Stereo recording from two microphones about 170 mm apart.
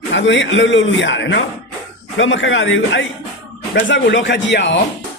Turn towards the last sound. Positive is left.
turn(degrees=90)